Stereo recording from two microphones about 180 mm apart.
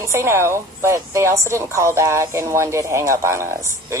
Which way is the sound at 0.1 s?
15° right (ahead or behind).